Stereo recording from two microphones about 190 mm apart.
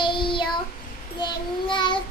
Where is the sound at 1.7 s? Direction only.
25° left (ahead or behind).